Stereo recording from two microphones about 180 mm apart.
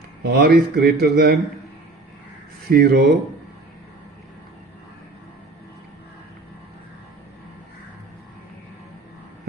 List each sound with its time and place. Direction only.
0.2 s speech: 60° right (ahead or behind)
2.6 s speech: 60° right (ahead or behind)